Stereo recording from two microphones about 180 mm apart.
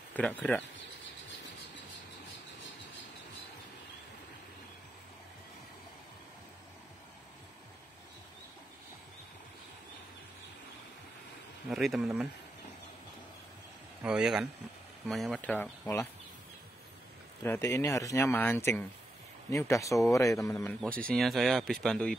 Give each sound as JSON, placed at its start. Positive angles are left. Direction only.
{"t": 0.1, "sound": "speech", "side_deg": 10}
{"t": 11.7, "sound": "speech", "side_deg": 0}
{"t": 14.0, "sound": "speech", "side_deg": -5}
{"t": 17.4, "sound": "speech", "side_deg": 15}
{"t": 21.1, "sound": "speech", "side_deg": 0}